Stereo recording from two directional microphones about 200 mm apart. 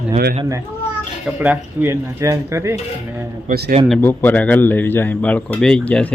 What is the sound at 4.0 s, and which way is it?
Speech, 10° left (ahead or behind).